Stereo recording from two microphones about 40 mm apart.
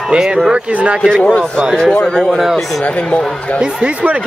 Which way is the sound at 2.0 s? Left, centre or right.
Centre.